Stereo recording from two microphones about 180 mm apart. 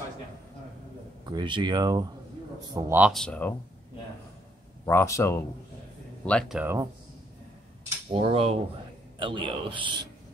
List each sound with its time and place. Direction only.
1.2 s speech: 25° right (ahead or behind)
2.7 s speech: 10° right (ahead or behind)
3.1 s speech: 5° left (ahead or behind)
4.8 s speech: 15° left (ahead or behind)
6.6 s speech: 15° right (ahead or behind)
8.1 s cutlery: 30° right (ahead or behind)
9.2 s speech: 30° right (ahead or behind)